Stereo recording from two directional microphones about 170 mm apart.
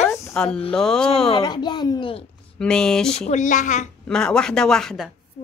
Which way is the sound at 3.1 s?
45° left (ahead or behind).